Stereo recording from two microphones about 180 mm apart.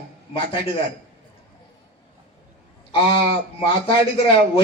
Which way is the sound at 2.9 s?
30° left (ahead or behind).